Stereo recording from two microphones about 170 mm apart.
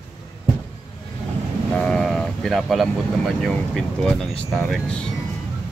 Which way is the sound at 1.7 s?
5° left (ahead or behind).